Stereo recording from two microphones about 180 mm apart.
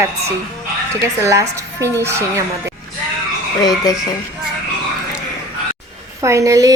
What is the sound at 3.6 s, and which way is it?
Speech, 20° left (ahead or behind).